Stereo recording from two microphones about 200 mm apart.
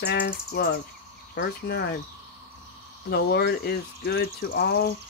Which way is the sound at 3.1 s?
55° left (ahead or behind).